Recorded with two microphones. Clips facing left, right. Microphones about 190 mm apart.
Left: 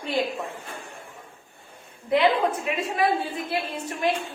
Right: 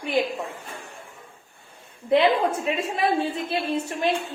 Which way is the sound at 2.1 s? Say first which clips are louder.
Right 2 dB; 25° right (ahead or behind).